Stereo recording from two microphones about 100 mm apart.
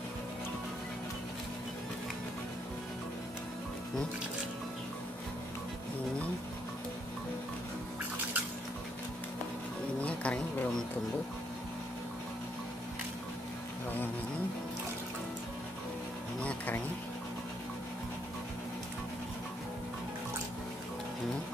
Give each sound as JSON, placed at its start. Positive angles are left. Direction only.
{"t": 10.0, "sound": "insect", "side_deg": 10}
{"t": 16.4, "sound": "insect", "side_deg": 15}